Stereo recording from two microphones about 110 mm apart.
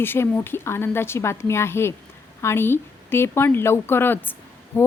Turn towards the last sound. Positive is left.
turn(degrees=20)  # may be behind; listen again after turning